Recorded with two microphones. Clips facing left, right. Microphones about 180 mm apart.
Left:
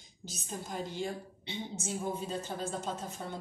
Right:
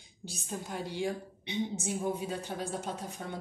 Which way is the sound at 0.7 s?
60° right (ahead or behind).